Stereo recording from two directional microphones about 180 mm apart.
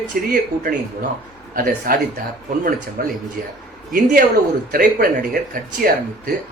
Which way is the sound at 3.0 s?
55° right (ahead or behind).